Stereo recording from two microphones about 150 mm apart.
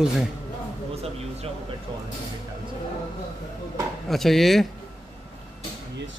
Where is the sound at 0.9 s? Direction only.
45° right (ahead or behind).